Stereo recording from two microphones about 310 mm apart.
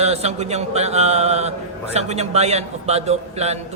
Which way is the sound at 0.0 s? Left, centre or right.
Right.